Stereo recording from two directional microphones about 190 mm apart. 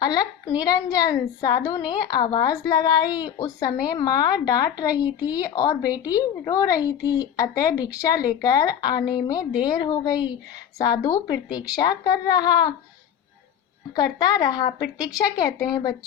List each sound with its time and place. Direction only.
0.0 s a woman's voice: 20° left (ahead or behind)
13.9 s a woman's voice: 20° left (ahead or behind)